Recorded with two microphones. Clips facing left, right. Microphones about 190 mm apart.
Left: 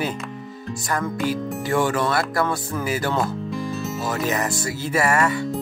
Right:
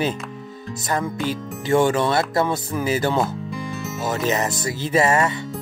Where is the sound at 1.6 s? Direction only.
20° right (ahead or behind).